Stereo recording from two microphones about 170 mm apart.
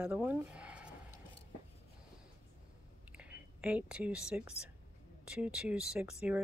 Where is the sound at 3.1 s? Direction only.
10° right (ahead or behind).